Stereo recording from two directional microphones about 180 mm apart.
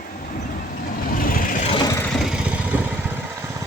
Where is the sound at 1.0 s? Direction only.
50° left (ahead or behind).